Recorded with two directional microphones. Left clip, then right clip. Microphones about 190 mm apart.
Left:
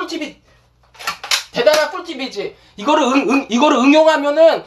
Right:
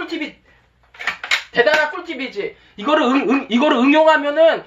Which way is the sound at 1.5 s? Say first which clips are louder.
Left 2 dB; 15° left (ahead or behind).